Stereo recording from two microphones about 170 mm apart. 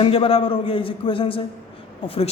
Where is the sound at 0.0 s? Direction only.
35° left (ahead or behind).